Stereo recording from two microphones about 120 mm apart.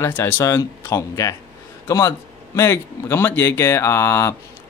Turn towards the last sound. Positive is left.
turn(degrees=20)  # may be behind; listen again after turning